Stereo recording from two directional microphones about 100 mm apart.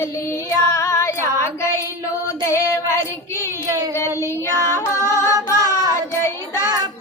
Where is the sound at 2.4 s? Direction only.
30° left (ahead or behind).